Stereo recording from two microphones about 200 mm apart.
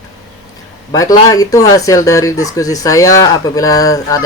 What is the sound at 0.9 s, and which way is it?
Speech, 15° left (ahead or behind).